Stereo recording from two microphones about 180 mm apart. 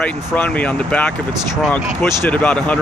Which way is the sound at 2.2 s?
10° left (ahead or behind).